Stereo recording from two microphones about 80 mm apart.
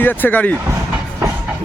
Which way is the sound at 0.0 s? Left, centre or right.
Left.